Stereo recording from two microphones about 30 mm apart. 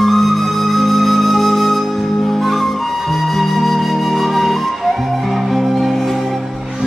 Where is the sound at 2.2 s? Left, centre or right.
Centre.